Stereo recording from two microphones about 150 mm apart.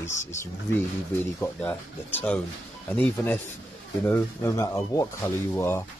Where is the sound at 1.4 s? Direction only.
15° left (ahead or behind).